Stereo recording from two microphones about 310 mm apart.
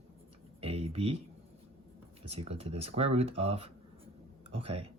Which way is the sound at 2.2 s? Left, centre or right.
Centre.